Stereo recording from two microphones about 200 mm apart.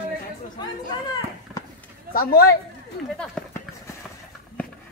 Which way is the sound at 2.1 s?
50° left (ahead or behind).